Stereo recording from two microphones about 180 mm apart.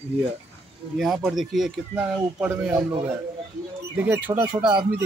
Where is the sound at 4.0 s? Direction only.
10° right (ahead or behind).